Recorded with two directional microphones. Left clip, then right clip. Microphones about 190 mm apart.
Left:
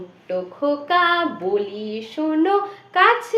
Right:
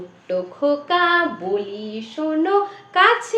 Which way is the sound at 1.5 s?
25° left (ahead or behind).